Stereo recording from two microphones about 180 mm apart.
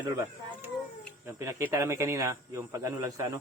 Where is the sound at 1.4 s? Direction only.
15° right (ahead or behind).